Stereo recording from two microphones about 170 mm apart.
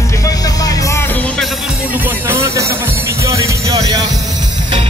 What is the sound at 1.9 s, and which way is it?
Music, 10° right (ahead or behind).